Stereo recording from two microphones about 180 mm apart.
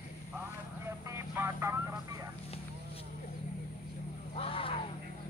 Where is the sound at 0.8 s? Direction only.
15° right (ahead or behind).